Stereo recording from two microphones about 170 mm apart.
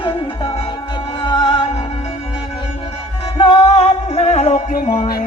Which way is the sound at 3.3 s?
30° left (ahead or behind).